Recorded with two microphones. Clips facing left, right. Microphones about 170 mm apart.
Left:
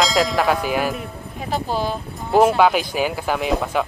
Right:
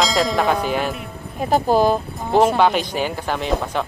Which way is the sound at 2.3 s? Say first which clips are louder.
Left 1 dB; 5° left (ahead or behind).